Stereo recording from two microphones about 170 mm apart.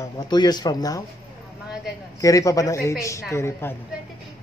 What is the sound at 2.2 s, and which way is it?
A woman's voice, 20° left (ahead or behind).